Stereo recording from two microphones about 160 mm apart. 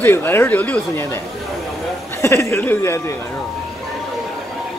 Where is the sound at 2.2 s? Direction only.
15° left (ahead or behind).